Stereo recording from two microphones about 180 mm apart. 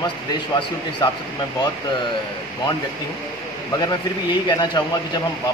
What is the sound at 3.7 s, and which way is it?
A man's voice, 25° left (ahead or behind).